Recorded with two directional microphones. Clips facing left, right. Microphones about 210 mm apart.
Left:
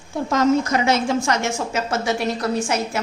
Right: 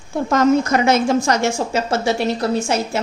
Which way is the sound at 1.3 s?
35° right (ahead or behind).